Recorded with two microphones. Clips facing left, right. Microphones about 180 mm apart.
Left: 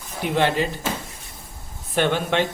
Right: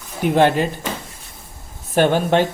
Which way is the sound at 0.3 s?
50° right (ahead or behind).